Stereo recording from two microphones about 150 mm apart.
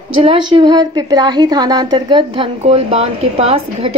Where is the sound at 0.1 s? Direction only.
35° right (ahead or behind).